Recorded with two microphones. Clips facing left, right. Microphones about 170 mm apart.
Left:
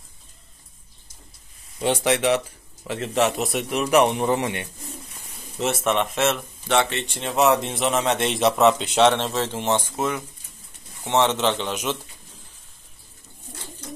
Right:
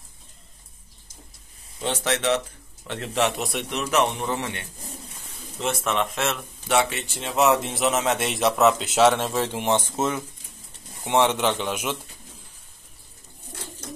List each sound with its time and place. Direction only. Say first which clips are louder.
1.8 s a man's voice: left 5 dB; 10° left (ahead or behind)
2.9 s speech: left 3 dB; centre (ahead or behind)
3.8 s a man's voice: left 5 dB; 15° left (ahead or behind)
5.6 s speech: left 3 dB; centre (ahead or behind)